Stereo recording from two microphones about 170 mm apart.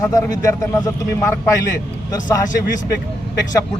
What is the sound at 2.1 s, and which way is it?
Speech, 20° left (ahead or behind).